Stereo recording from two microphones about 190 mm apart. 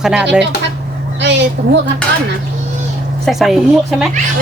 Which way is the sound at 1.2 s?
70° right (ahead or behind).